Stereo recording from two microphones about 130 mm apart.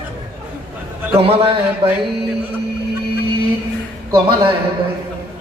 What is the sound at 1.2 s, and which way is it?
Speech, 45° right (ahead or behind).